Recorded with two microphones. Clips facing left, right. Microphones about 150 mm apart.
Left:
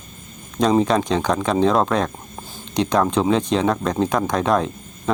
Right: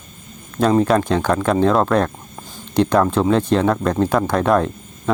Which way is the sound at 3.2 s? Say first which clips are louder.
Right 2 dB; 5° right (ahead or behind).